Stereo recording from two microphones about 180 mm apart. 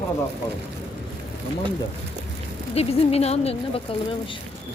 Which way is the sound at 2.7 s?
35° left (ahead or behind).